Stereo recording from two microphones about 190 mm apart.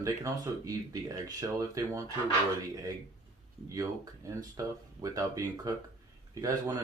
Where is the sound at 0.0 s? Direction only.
20° right (ahead or behind).